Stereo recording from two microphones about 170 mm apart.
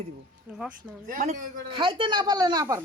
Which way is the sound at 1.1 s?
50° right (ahead or behind).